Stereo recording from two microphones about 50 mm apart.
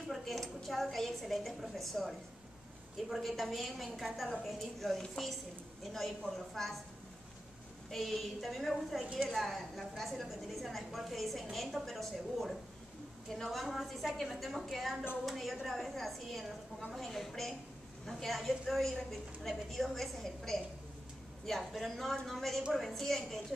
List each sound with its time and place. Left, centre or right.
0.1 s a woman's voice: centre
7.9 s a woman's voice: centre
9.0 s a woman's voice: right
9.3 s a woman's voice: centre